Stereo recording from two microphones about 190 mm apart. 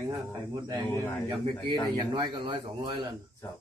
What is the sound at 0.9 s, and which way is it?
Speech, 15° left (ahead or behind).